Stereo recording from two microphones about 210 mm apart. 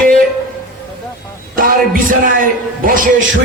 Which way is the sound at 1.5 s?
40° right (ahead or behind).